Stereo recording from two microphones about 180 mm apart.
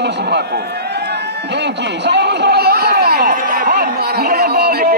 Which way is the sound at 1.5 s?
70° right (ahead or behind).